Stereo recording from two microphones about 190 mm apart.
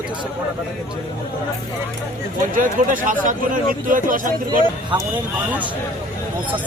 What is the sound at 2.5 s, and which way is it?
Speech, 45° right (ahead or behind).